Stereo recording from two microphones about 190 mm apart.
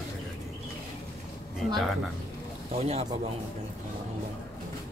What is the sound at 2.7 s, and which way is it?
Speech, 35° right (ahead or behind).